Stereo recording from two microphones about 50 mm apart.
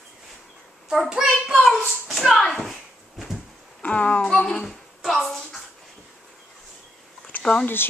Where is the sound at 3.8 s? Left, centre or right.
Left.